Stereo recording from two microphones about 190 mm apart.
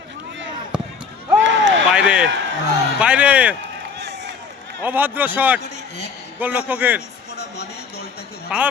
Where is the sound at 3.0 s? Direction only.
5° right (ahead or behind).